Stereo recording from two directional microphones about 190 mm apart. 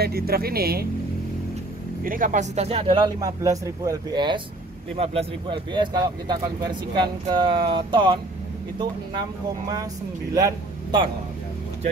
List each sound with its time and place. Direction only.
0.0 s speech: 55° right (ahead or behind)
2.0 s speech: 45° right (ahead or behind); by 8.2 s 25° right (ahead or behind)
10.3 s speech: 20° right (ahead or behind)